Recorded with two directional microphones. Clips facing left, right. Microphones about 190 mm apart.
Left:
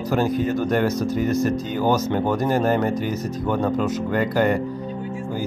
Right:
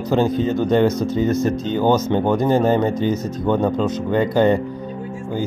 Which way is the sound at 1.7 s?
25° right (ahead or behind).